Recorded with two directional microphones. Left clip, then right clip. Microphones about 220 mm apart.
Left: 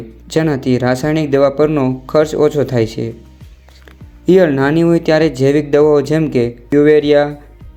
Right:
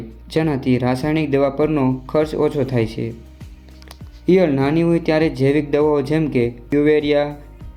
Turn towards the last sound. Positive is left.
turn(degrees=15)  # may be behind; listen again after turning